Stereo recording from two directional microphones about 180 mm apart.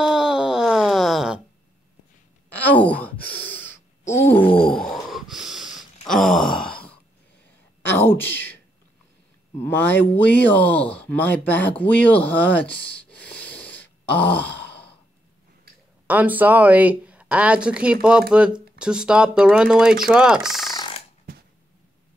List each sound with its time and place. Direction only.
0.0 s wail: 5° right (ahead or behind)
2.5 s sigh: 10° left (ahead or behind)
3.4 s gasp: 10° left (ahead or behind)
4.0 s groan: 40° left (ahead or behind)
4.9 s snort: centre (ahead or behind)
6.0 s groan: centre (ahead or behind)
7.9 s a sound: 10° left (ahead or behind)
9.6 s speech: 10° left (ahead or behind)
13.4 s a sound: 10° left (ahead or behind)
16.1 s speech: 10° right (ahead or behind)
20.7 s a sound: 25° left (ahead or behind)